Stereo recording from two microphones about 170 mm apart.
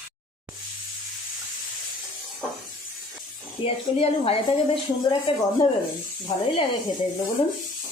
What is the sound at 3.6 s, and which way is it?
A woman's voice, 35° left (ahead or behind).